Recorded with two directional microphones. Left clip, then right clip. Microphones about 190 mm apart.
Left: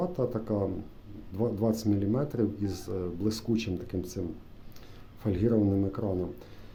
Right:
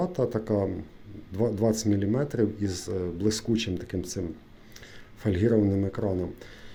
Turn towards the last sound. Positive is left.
turn(degrees=-5)  # may be behind; listen again after turning